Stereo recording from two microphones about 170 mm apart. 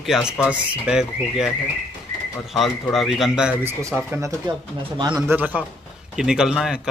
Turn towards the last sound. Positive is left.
turn(degrees=-5)  # may be behind; listen again after turning